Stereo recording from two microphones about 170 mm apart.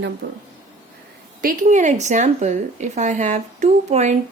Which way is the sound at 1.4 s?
50° right (ahead or behind).